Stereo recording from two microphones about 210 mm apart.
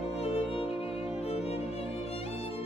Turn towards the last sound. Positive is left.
turn(degrees=30)  # may be behind; listen again after turning